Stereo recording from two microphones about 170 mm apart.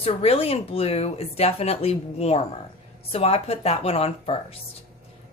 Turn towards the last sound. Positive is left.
turn(degrees=35)  # may be behind; listen again after turning